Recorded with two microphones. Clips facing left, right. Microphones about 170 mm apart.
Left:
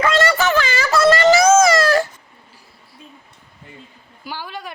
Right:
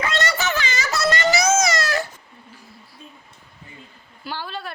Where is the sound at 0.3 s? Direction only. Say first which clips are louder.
Left 7 dB; 90° left.